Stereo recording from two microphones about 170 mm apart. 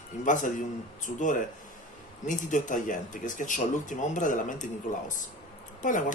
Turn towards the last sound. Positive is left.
turn(degrees=50)  # may be behind; listen again after turning